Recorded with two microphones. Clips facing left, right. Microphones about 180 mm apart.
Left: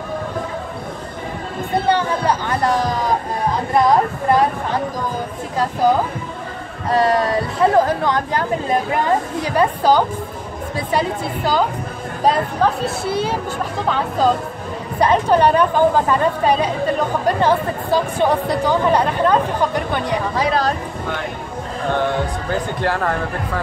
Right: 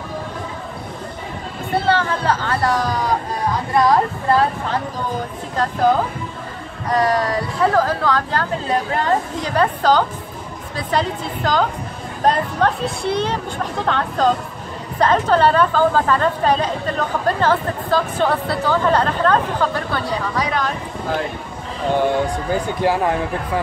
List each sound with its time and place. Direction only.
1.8 s a woman's voice: 15° left (ahead or behind)
5.6 s a woman's voice: 10° left (ahead or behind)
6.9 s a woman's voice: 25° left (ahead or behind)
21.9 s speech: 10° right (ahead or behind)